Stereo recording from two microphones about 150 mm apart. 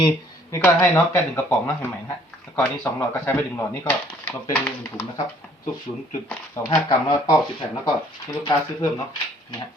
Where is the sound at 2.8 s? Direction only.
15° left (ahead or behind).